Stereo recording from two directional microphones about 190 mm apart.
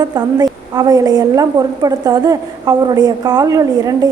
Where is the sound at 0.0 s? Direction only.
20° right (ahead or behind).